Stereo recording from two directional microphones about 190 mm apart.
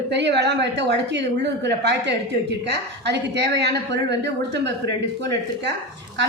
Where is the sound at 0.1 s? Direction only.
65° right (ahead or behind).